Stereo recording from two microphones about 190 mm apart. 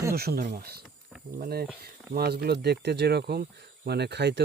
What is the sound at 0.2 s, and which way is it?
Speech, 50° right (ahead or behind).